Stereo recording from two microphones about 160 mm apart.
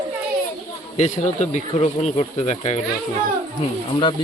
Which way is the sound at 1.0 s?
45° left (ahead or behind).